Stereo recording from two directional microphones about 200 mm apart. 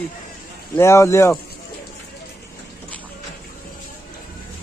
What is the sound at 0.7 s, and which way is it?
Speech, 15° left (ahead or behind).